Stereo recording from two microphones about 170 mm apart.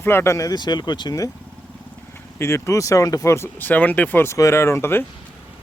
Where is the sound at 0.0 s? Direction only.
15° left (ahead or behind).